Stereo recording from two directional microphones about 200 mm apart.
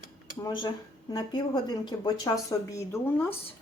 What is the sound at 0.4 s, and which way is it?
A woman's voice, 20° left (ahead or behind).